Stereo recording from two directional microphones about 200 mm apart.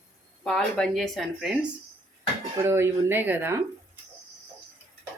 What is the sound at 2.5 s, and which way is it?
Speech, 15° right (ahead or behind).